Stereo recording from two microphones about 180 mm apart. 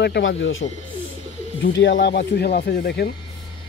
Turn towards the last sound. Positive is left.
turn(degrees=65)  # may be behind; listen again after turning